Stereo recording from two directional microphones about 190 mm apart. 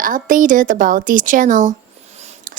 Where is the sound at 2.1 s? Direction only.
35° right (ahead or behind).